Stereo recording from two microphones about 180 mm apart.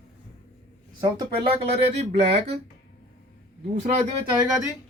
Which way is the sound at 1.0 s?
30° right (ahead or behind).